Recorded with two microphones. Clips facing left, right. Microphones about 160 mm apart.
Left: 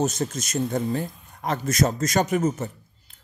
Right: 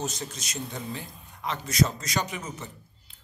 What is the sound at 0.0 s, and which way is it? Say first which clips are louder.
Speech: left 9 dB; 45° left (ahead or behind).